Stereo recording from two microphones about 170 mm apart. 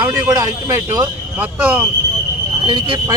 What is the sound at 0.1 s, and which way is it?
Speech, 20° right (ahead or behind).